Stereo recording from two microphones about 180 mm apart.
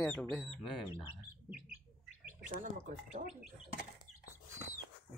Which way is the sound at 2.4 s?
45° right (ahead or behind).